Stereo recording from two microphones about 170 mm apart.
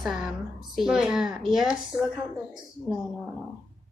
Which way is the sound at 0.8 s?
5° right (ahead or behind).